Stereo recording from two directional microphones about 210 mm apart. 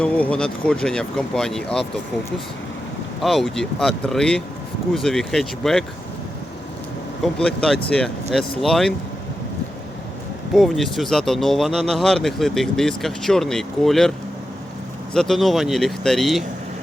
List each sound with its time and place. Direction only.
0.0 s speech: 5° left (ahead or behind)
3.2 s speech: centre (ahead or behind)
7.3 s speech: 5° left (ahead or behind)
10.5 s speech: centre (ahead or behind)
15.1 s speech: centre (ahead or behind)